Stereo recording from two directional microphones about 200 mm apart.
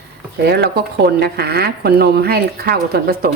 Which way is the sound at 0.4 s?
50° right (ahead or behind).